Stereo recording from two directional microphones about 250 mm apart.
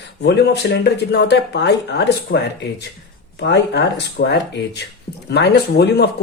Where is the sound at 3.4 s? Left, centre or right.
Left.